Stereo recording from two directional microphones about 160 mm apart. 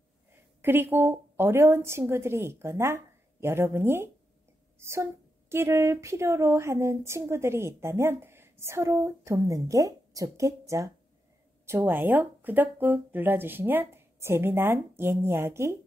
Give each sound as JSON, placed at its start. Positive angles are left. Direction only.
{"t": 0.6, "sound": "a woman's voice", "side_deg": -15}